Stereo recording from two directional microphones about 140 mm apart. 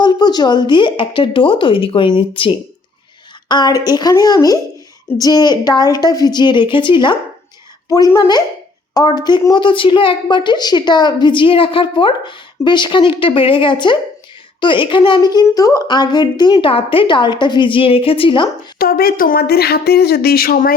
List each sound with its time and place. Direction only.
0.0 s a woman's voice: 30° left (ahead or behind)
18.8 s speech: 90° left